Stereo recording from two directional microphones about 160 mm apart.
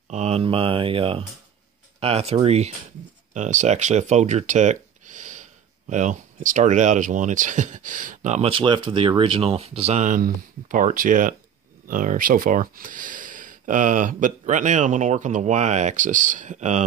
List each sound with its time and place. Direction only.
0.1 s speech: 40° right (ahead or behind)
10.0 s speech: 55° right (ahead or behind)